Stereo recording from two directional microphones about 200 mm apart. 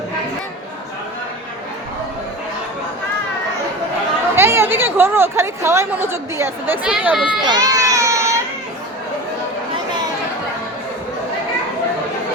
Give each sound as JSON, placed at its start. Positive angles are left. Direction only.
{"t": 4.4, "sound": "a woman's voice", "side_deg": -10}
{"t": 7.4, "sound": "baby cry", "side_deg": -20}